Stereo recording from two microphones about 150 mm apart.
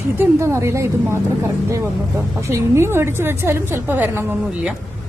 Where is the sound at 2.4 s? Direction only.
20° right (ahead or behind).